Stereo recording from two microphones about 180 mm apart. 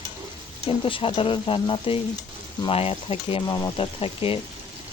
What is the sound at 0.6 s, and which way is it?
Speech, 30° left (ahead or behind).